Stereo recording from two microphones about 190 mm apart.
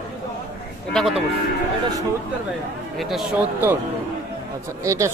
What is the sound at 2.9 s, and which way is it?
Speech, centre (ahead or behind).